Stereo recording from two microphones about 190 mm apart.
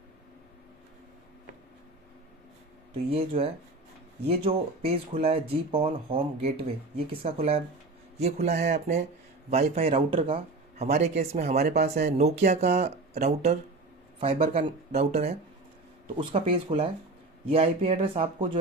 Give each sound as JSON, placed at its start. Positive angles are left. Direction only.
{"t": 3.1, "sound": "speech", "side_deg": -30}